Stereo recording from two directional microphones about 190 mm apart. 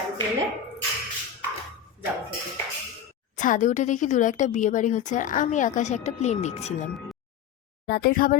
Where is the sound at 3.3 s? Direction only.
40° left (ahead or behind).